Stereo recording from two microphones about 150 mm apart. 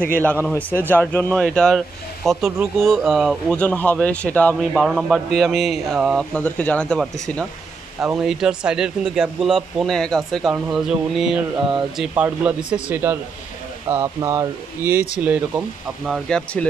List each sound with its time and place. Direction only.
0.5 s speech: 10° left (ahead or behind)
4.6 s speech: centre (ahead or behind)
6.3 s speech: 10° left (ahead or behind); by 15.6 s 10° right (ahead or behind)
16.3 s speech: 5° left (ahead or behind)